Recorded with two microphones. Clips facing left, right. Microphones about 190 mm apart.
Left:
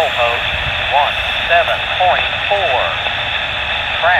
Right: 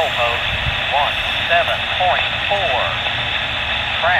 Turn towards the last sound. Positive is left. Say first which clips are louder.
# left 4 dB
turn(degrees=60)  # may be behind; listen again after turning